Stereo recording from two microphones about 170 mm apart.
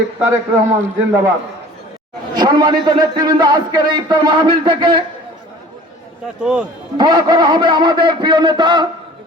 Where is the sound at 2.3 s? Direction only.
25° right (ahead or behind).